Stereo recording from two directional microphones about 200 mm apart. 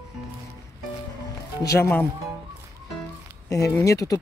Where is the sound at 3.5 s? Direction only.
15° left (ahead or behind).